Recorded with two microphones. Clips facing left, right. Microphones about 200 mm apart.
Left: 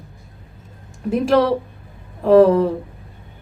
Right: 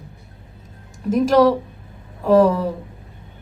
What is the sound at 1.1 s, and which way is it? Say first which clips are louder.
A woman's voice: right 2 dB; 40° right (ahead or behind).